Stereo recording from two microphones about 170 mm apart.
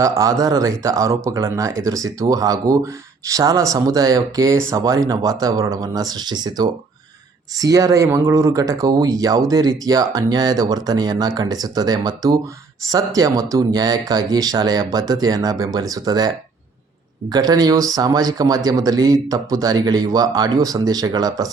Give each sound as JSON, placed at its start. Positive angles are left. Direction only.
{"t": 0.0, "sound": "speech", "side_deg": -20}